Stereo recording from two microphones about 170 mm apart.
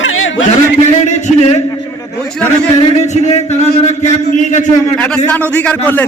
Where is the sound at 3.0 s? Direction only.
40° left (ahead or behind).